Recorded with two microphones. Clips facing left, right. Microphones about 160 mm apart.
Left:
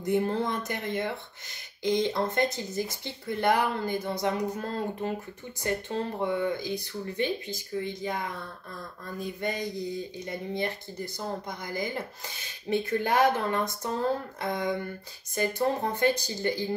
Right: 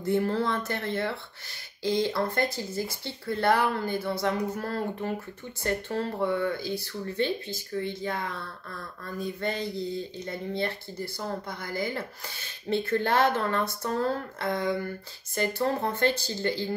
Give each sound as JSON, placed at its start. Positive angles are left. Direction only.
{"t": 0.0, "sound": "speech", "side_deg": 20}